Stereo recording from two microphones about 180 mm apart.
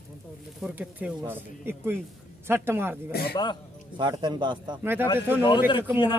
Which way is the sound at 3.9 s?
25° right (ahead or behind).